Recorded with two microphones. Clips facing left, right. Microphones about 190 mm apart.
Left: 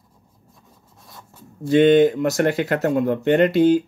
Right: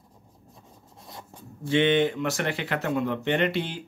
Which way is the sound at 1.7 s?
40° left (ahead or behind).